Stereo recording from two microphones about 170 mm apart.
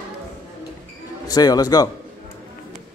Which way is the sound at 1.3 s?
25° left (ahead or behind).